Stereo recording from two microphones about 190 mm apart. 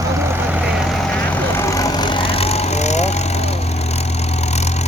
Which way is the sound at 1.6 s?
15° left (ahead or behind).